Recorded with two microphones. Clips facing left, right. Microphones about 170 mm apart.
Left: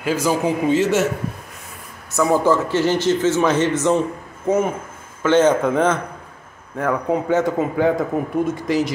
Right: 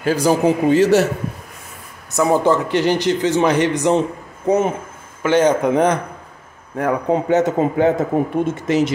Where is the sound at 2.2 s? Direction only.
20° right (ahead or behind).